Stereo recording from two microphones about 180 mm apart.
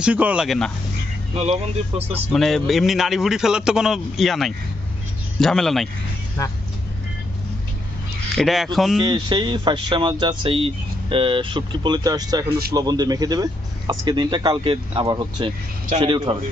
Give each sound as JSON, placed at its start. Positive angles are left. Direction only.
{"t": 0.0, "sound": "a man's voice", "side_deg": -10}
{"t": 1.3, "sound": "speech", "side_deg": -35}
{"t": 2.1, "sound": "a man's voice", "side_deg": 0}
{"t": 8.4, "sound": "a man's voice", "side_deg": 0}
{"t": 9.0, "sound": "speech", "side_deg": -25}